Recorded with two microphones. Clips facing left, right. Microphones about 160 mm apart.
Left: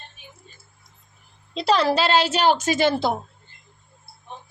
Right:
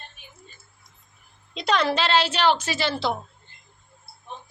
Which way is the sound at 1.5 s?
35° left (ahead or behind).